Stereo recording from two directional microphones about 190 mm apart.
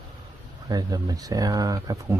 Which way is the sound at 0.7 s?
20° right (ahead or behind).